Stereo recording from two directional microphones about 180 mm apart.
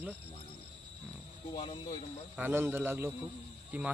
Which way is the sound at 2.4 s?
10° right (ahead or behind).